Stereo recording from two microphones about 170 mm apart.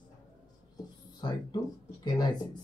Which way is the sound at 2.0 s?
25° left (ahead or behind).